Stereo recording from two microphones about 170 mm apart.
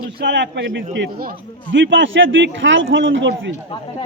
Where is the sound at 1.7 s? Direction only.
90° right.